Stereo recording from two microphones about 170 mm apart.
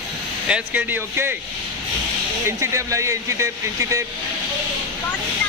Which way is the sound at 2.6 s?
15° right (ahead or behind).